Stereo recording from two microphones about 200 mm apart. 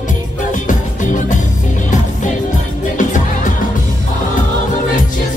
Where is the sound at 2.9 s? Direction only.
40° left (ahead or behind).